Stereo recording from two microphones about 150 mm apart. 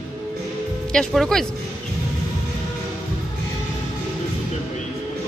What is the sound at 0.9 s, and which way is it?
Speech, 5° left (ahead or behind).